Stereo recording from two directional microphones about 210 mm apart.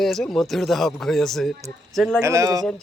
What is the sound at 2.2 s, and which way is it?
Speech, 15° right (ahead or behind).